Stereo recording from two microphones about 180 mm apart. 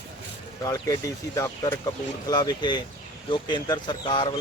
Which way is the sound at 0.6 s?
20° left (ahead or behind).